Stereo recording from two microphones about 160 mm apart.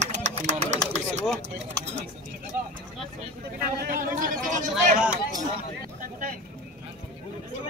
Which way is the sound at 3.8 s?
60° right (ahead or behind).